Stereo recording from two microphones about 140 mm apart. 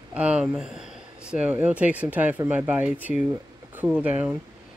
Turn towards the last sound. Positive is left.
turn(degrees=-10)  # may be behind; listen again after turning